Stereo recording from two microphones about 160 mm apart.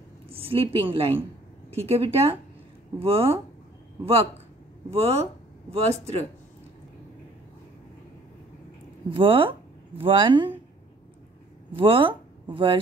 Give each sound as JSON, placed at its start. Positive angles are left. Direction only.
{"t": 0.3, "sound": "a woman's voice", "side_deg": -35}
{"t": 9.1, "sound": "speech", "side_deg": -35}
{"t": 11.7, "sound": "a woman's voice", "side_deg": -35}